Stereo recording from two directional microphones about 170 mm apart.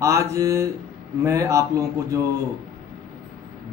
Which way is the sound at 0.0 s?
15° right (ahead or behind).